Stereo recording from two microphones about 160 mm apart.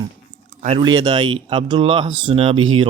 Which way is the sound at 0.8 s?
25° right (ahead or behind).